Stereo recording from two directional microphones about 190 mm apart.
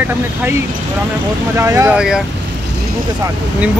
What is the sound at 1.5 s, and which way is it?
Speech, 15° right (ahead or behind).